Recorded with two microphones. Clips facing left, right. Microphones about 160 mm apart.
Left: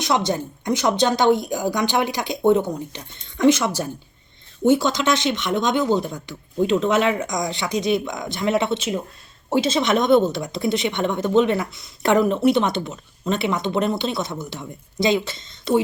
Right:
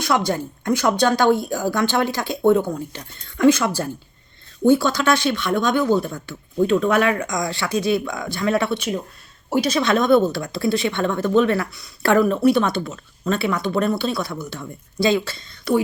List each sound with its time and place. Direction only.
0.0 s speech: 20° left (ahead or behind)